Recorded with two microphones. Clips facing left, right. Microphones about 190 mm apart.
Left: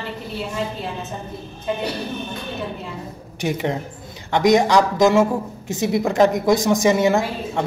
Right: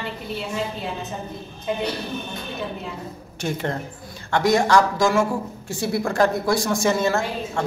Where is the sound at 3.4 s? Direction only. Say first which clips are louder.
Left 3 dB; 15° left (ahead or behind).